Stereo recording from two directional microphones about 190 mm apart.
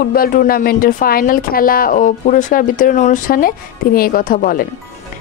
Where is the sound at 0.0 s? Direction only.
50° left (ahead or behind).